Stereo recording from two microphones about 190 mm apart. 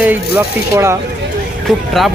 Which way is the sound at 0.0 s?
10° right (ahead or behind).